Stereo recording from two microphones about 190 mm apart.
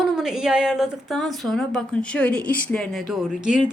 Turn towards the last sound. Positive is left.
turn(degrees=-5)  # may be behind; listen again after turning